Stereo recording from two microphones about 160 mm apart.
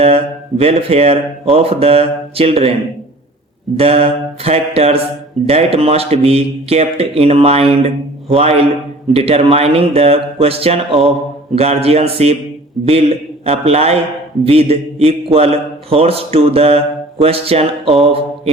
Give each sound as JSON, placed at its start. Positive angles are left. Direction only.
{"t": 0.0, "sound": "a man's voice", "side_deg": -40}
{"t": 3.8, "sound": "a man's voice", "side_deg": -40}